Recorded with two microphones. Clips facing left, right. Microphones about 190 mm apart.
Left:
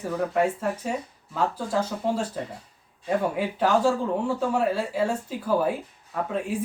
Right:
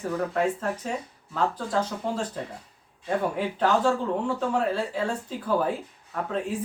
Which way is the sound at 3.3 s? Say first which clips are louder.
Left 1 dB; 10° left (ahead or behind).